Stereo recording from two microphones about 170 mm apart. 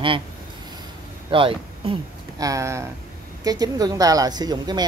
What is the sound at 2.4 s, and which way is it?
Speech, 20° right (ahead or behind).